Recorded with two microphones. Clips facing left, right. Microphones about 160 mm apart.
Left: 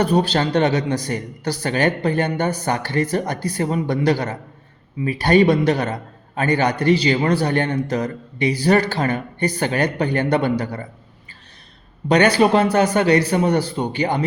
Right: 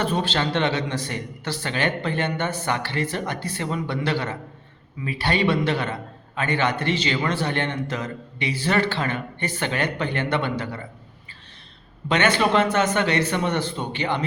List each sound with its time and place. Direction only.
0.0 s a man's voice: 40° left (ahead or behind)
12.0 s a man's voice: 40° left (ahead or behind)